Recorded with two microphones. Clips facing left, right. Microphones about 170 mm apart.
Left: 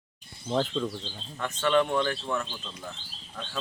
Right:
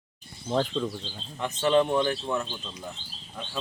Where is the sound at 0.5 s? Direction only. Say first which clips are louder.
Right 1 dB; centre (ahead or behind).